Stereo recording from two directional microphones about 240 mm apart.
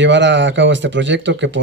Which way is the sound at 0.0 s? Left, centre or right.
Right.